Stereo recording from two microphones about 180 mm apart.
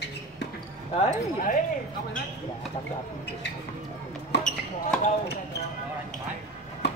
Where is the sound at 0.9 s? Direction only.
40° left (ahead or behind).